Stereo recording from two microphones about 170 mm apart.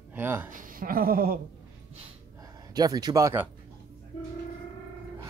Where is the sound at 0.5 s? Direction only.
50° right (ahead or behind).